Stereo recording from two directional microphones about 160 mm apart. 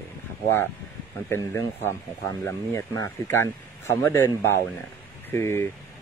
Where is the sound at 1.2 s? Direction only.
15° left (ahead or behind).